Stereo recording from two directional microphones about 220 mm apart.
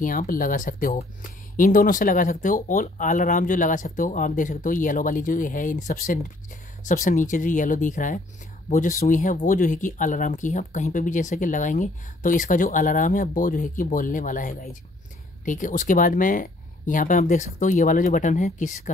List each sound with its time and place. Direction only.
0.0 s speech: 40° left (ahead or behind)